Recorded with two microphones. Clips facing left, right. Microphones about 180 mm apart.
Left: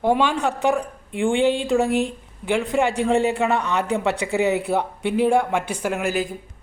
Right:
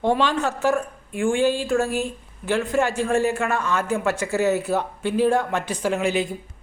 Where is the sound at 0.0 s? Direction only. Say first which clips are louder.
Left 1 dB; 10° left (ahead or behind).